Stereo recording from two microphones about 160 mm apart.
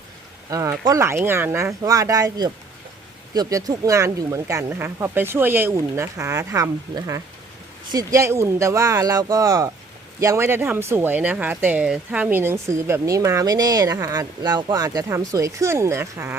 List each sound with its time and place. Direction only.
0.5 s speech: 20° right (ahead or behind)